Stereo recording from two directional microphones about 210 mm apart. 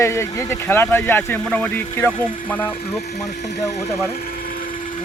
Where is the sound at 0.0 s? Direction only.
15° left (ahead or behind).